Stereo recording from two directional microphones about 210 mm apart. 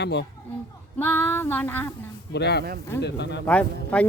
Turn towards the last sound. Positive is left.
turn(degrees=5)  # may be behind; listen again after turning